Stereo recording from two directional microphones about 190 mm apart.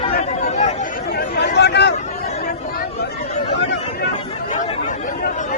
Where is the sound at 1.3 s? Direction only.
60° left (ahead or behind).